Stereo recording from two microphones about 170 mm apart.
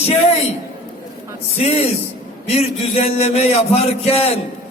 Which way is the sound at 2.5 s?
40° left (ahead or behind).